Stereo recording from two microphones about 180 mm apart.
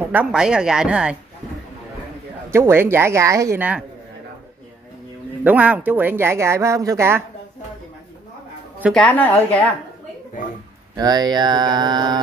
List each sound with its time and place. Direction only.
0.0 s a woman's voice: 10° right (ahead or behind)
2.5 s speech: 15° right (ahead or behind)
5.4 s speech: 10° right (ahead or behind)
8.9 s a woman's voice: 10° left (ahead or behind)
11.0 s speech: 20° right (ahead or behind)